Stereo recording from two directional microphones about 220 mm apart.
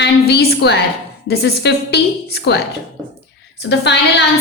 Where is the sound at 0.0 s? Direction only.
50° left (ahead or behind).